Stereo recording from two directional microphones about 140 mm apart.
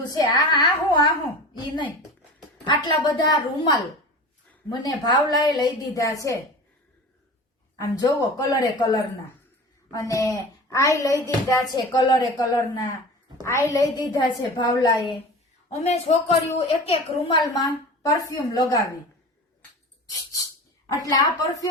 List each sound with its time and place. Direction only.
0.1 s a woman's voice: 30° left (ahead or behind)
2.6 s a woman's voice: 30° left (ahead or behind)
7.8 s a woman's voice: 25° left (ahead or behind)
15.8 s a woman's voice: 50° left (ahead or behind)
17.6 s a woman's voice: 25° left (ahead or behind)
20.8 s a woman's voice: 25° left (ahead or behind)